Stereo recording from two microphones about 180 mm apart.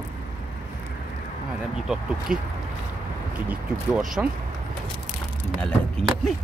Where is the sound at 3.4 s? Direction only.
Centre (ahead or behind).